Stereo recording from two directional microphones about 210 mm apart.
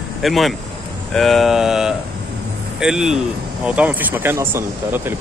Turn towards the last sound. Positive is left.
turn(degrees=-10)  # may be behind; listen again after turning